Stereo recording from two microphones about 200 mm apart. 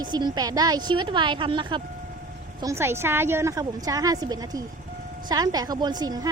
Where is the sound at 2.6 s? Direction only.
10° right (ahead or behind).